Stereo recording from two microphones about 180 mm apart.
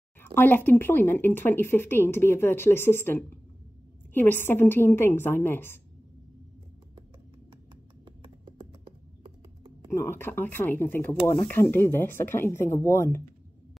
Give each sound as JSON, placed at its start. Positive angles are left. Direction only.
{"t": 0.2, "sound": "speech", "side_deg": 10}
{"t": 8.0, "sound": "computer keyboard", "side_deg": -25}
{"t": 9.8, "sound": "speech", "side_deg": 15}